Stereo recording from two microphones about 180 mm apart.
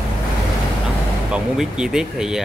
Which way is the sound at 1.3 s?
5° right (ahead or behind).